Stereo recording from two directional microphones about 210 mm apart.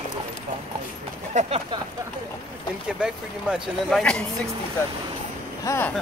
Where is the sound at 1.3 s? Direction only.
30° right (ahead or behind).